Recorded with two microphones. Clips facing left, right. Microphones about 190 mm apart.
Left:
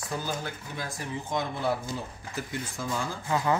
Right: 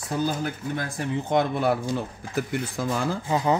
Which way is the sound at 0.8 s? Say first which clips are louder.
Right 5 dB; 65° right (ahead or behind).